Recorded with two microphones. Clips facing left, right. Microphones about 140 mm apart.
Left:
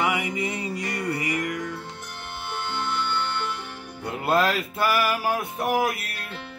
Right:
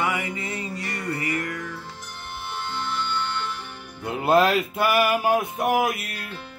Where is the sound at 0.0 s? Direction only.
15° left (ahead or behind).